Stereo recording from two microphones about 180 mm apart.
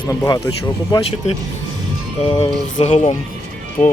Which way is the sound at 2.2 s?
30° left (ahead or behind).